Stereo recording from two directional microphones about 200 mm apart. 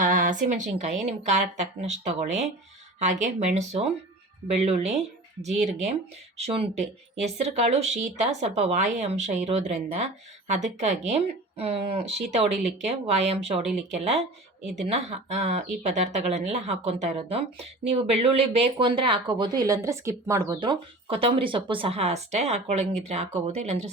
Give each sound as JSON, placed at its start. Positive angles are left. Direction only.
{"t": 0.0, "sound": "speech", "side_deg": -40}
{"t": 5.5, "sound": "speech", "side_deg": 0}
{"t": 6.4, "sound": "speech", "side_deg": -35}
{"t": 14.6, "sound": "speech", "side_deg": 0}
{"t": 14.8, "sound": "speech", "side_deg": -30}